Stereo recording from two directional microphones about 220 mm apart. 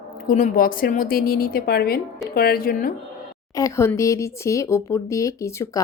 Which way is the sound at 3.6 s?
15° left (ahead or behind).